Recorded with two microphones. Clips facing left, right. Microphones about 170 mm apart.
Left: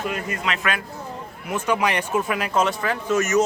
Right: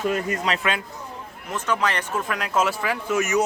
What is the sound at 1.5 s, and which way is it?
Speech, 10° left (ahead or behind).